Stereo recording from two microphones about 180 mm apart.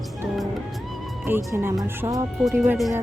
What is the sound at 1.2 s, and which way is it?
Speech, 10° right (ahead or behind).